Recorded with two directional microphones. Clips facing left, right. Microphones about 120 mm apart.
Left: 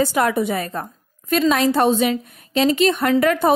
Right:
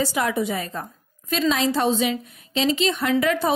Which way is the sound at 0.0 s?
55° left (ahead or behind).